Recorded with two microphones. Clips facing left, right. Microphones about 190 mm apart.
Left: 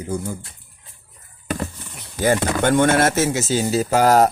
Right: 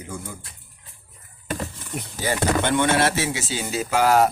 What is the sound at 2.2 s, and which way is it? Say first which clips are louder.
Speech: left 4 dB; 50° left (ahead or behind).